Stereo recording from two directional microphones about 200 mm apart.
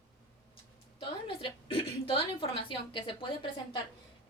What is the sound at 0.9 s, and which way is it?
Speech, 25° left (ahead or behind).